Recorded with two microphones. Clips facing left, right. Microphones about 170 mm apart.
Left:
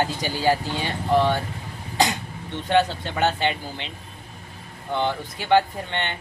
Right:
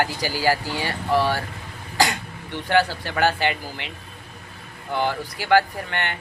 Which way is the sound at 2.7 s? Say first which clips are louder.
Even; 20° left (ahead or behind).